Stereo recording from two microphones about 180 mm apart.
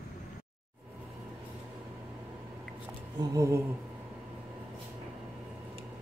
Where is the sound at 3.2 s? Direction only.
20° right (ahead or behind).